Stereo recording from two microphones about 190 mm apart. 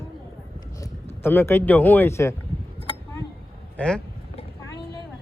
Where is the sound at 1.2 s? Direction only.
10° left (ahead or behind).